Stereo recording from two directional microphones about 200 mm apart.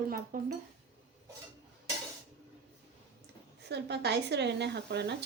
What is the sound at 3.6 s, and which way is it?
Speech, 55° right (ahead or behind).